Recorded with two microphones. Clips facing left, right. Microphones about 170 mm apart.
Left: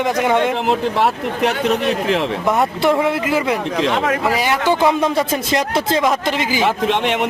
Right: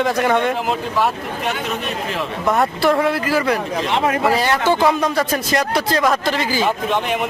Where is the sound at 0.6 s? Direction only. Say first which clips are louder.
Left 3 dB; 70° left (ahead or behind).